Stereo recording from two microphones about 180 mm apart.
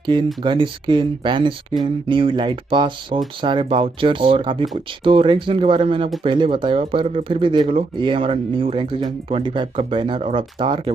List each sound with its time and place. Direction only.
0.4 s speech: 25° right (ahead or behind)